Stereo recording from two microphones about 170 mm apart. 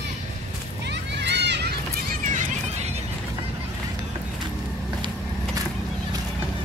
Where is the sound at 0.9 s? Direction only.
90° right.